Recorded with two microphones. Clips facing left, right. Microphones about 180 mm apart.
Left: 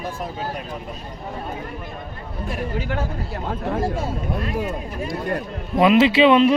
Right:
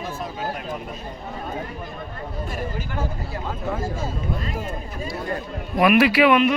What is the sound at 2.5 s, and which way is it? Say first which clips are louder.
Speech: left 7 dB; 65° left (ahead or behind).